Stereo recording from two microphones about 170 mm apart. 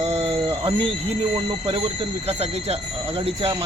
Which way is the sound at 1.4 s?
30° right (ahead or behind).